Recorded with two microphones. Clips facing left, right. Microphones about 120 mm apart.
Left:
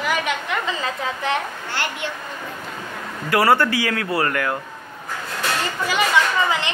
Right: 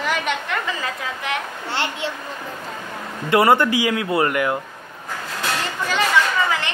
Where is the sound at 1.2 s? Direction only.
35° left (ahead or behind).